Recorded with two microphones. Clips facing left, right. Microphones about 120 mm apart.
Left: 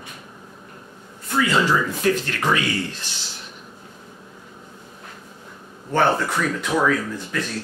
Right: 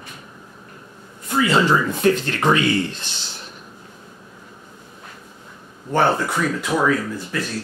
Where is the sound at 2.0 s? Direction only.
30° right (ahead or behind).